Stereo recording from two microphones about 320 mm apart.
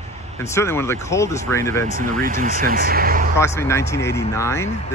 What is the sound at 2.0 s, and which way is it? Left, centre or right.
Speech, right.